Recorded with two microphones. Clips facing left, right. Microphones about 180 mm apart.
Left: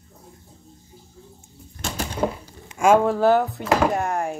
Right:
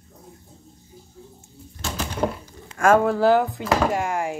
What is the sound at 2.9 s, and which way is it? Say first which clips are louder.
Speech: even; 10° right (ahead or behind).